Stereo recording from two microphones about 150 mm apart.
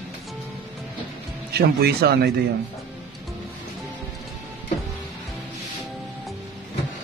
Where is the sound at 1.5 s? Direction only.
90° right.